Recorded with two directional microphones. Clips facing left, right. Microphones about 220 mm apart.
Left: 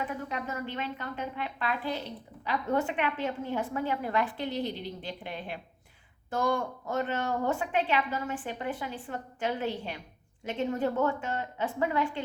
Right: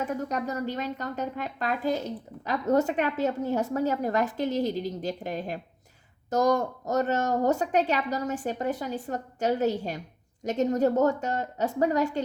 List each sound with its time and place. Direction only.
0.0 s a woman's voice: 40° right (ahead or behind)